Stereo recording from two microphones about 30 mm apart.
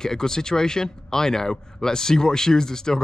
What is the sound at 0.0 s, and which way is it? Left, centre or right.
Speech, left.